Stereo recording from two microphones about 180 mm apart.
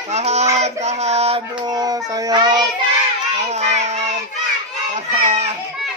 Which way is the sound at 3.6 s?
40° right (ahead or behind).